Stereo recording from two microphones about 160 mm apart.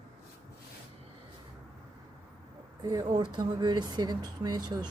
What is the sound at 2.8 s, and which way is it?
Speech, 25° right (ahead or behind).